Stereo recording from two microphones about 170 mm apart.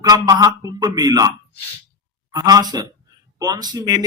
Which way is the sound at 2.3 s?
25° right (ahead or behind).